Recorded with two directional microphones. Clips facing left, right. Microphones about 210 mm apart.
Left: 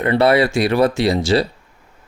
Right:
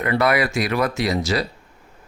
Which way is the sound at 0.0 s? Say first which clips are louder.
Left 5 dB; 30° left (ahead or behind).